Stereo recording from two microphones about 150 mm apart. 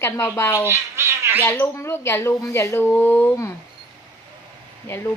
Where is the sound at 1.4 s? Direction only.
15° left (ahead or behind).